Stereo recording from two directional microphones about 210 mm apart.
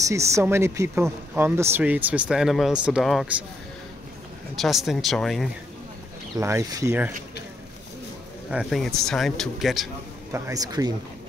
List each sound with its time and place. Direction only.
0.0 s speech: 15° right (ahead or behind)
4.6 s speech: centre (ahead or behind)
6.4 s speech: 15° right (ahead or behind)
8.5 s speech: centre (ahead or behind)
10.3 s speech: 15° right (ahead or behind)